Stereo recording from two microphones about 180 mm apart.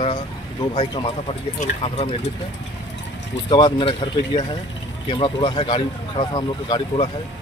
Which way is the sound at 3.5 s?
25° left (ahead or behind).